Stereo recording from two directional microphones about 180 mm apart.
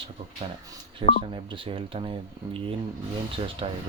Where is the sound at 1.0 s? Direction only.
30° right (ahead or behind).